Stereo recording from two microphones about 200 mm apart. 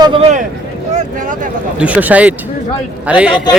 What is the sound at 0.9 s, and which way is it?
Speech, 40° right (ahead or behind).